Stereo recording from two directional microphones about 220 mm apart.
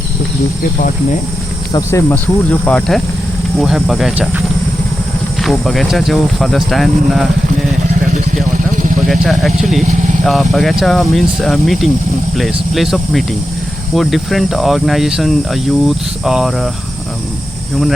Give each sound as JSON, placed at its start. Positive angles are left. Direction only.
{"t": 1.7, "sound": "speech", "side_deg": 10}
{"t": 5.4, "sound": "speech", "side_deg": 0}
{"t": 8.5, "sound": "vehicle", "side_deg": -35}
{"t": 9.0, "sound": "speech", "side_deg": 0}